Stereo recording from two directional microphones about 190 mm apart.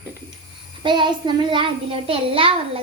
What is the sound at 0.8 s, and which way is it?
A child's voice, 25° right (ahead or behind).